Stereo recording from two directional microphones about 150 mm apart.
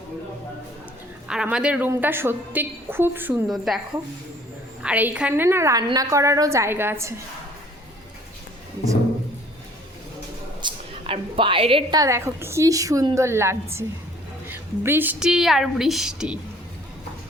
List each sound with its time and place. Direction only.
1.3 s a woman's voice: 5° right (ahead or behind)
3.5 s a woman's voice: centre (ahead or behind)
4.8 s a woman's voice: 10° right (ahead or behind)
10.6 s a woman's voice: 35° right (ahead or behind); by 16.4 s 5° right (ahead or behind)